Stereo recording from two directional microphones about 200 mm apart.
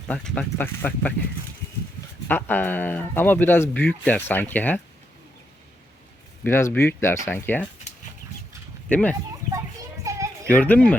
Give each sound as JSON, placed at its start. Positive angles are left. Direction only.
{"t": 0.1, "sound": "speech", "side_deg": 5}
{"t": 2.2, "sound": "speech", "side_deg": 10}
{"t": 6.4, "sound": "speech", "side_deg": 10}
{"t": 8.9, "sound": "speech", "side_deg": 5}
{"t": 10.0, "sound": "children playing", "side_deg": -15}
{"t": 10.5, "sound": "speech", "side_deg": 5}